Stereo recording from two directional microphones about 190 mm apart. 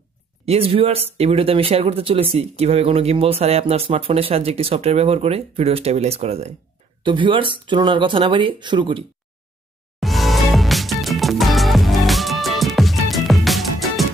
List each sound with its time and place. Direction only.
0.5 s speech: 30° right (ahead or behind)
9.9 s music: centre (ahead or behind)